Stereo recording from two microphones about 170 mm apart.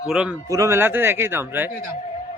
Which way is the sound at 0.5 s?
15° right (ahead or behind).